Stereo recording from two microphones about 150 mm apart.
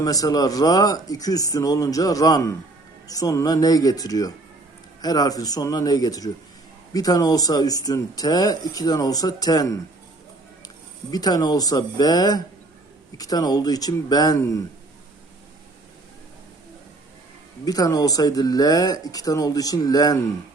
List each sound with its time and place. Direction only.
0.0 s speech: 25° left (ahead or behind)
11.1 s speech: 25° left (ahead or behind)
17.7 s speech: 25° left (ahead or behind)